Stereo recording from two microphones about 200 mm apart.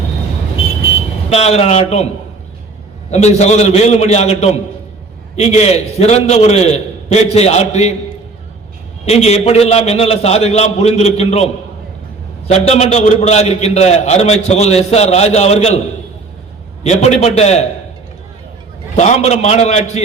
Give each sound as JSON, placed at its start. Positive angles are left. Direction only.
{"t": 1.3, "sound": "a man's voice", "side_deg": 30}
{"t": 3.1, "sound": "a man's voice", "side_deg": 35}
{"t": 9.0, "sound": "a man's voice", "side_deg": 30}
{"t": 12.5, "sound": "a man's voice", "side_deg": 35}
{"t": 16.8, "sound": "a man's voice", "side_deg": 35}
{"t": 18.9, "sound": "a man's voice", "side_deg": 35}